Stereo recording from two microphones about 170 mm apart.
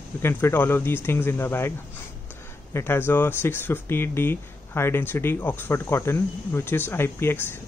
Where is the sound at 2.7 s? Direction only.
15° left (ahead or behind).